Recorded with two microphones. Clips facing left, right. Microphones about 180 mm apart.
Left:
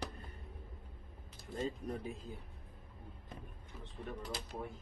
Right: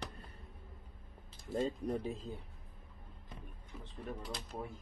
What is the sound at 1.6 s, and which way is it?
Speech, 30° right (ahead or behind).